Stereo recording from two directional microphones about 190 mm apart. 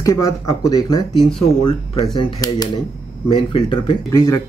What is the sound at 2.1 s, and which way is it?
Speech, 20° left (ahead or behind).